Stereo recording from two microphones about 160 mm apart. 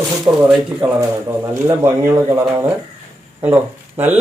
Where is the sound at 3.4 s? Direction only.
10° right (ahead or behind).